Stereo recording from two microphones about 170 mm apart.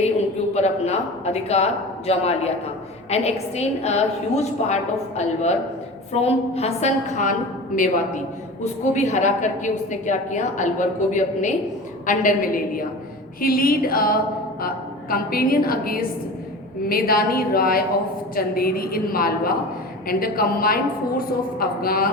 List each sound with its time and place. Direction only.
0.5 s a woman's voice: 40° left (ahead or behind)
8.6 s a woman's voice: 45° left (ahead or behind); by 22.0 s 60° left (ahead or behind)